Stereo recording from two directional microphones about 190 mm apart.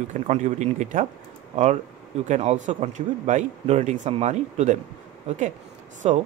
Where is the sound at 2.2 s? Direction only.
40° right (ahead or behind).